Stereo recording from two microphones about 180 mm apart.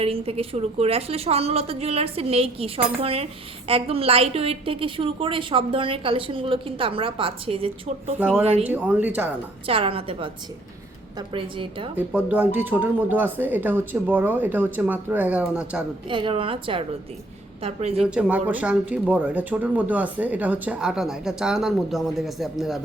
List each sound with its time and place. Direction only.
0.0 s a woman's voice: 30° right (ahead or behind)
8.2 s speech: 10° right (ahead or behind)
9.6 s a woman's voice: 30° right (ahead or behind)
11.9 s speech: 10° right (ahead or behind)
16.0 s a woman's voice: 25° right (ahead or behind)
18.0 s speech: 5° right (ahead or behind)